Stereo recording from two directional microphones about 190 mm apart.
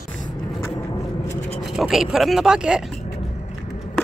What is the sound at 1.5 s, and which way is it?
Speech, centre (ahead or behind).